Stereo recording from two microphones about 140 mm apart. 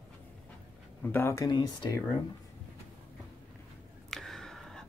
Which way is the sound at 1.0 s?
15° left (ahead or behind).